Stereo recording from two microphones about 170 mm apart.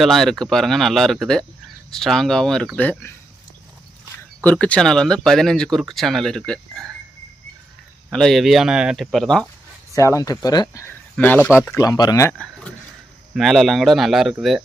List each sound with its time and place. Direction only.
0.0 s speech: centre (ahead or behind)
4.4 s speech: 10° left (ahead or behind)
8.1 s speech: centre (ahead or behind)
9.9 s speech: 20° left (ahead or behind)
13.3 s speech: centre (ahead or behind)